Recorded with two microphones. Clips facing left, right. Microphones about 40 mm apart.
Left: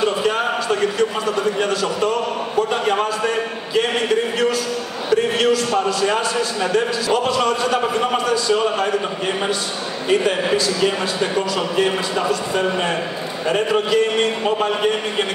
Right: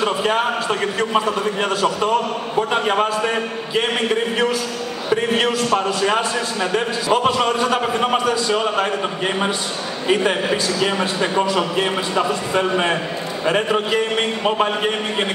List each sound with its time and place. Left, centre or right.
0.2 s a man's voice: right
5.1 s a man's voice: right
10.0 s a man's voice: right
10.8 s a man's voice: centre
12.3 s a man's voice: right